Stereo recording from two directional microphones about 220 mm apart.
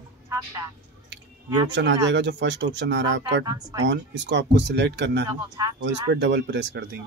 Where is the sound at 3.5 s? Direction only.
15° right (ahead or behind).